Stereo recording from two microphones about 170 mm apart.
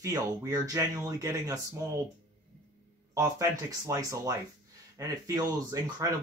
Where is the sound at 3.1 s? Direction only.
20° right (ahead or behind).